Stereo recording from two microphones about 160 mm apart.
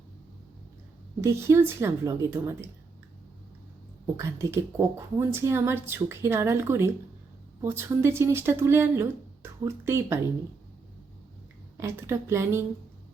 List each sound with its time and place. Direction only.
1.2 s speech: 20° right (ahead or behind)
4.0 s speech: 15° right (ahead or behind)
11.8 s speech: 15° right (ahead or behind)